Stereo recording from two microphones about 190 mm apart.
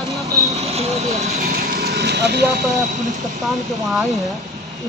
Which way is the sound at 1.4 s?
50° right (ahead or behind).